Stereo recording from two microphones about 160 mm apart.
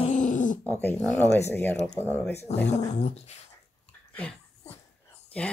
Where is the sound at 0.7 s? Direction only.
10° left (ahead or behind).